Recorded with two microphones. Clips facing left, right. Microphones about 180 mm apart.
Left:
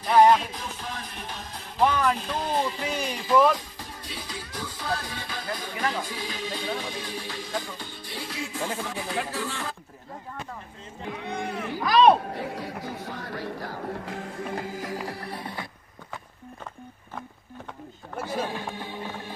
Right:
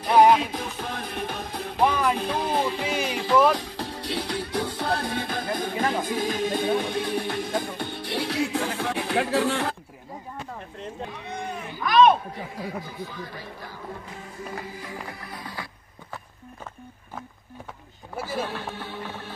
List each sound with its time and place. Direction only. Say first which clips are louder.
0.1 s music: right 1 dB; 10° right (ahead or behind)
0.5 s music: right 4 dB; 60° right (ahead or behind)
1.8 s music: even; 15° right (ahead or behind)
2.1 s speech: right 4 dB; 60° right (ahead or behind)
2.5 s music: even; 65° right (ahead or behind)
5.9 s speech: right 3 dB; 50° right (ahead or behind); by 9.8 s 70° right (ahead or behind)
11.1 s a sound: left 2 dB; 65° left (ahead or behind); by 11.8 s 90° left
11.8 s a sound: even; 35° left (ahead or behind)
12.4 s speech: left 1 dB; 75° left (ahead or behind)
14.0 s music: left 4 dB; 60° left (ahead or behind)
15.0 s music: left 4 dB; 30° left (ahead or behind)
18.1 s a sound: right 1 dB; 10° right (ahead or behind)
18.4 s music: even; 15° left (ahead or behind)